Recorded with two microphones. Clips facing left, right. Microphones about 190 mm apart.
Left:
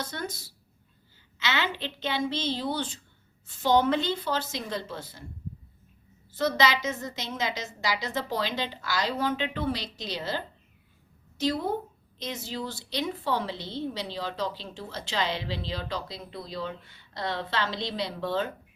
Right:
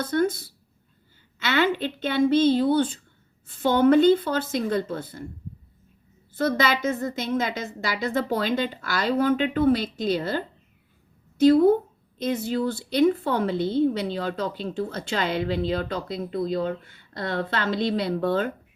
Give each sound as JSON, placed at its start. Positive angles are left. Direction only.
{"t": 0.0, "sound": "a woman's voice", "side_deg": -55}
{"t": 6.3, "sound": "a woman's voice", "side_deg": -55}